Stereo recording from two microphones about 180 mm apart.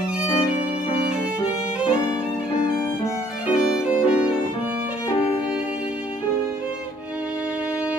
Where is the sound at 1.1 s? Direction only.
5° right (ahead or behind).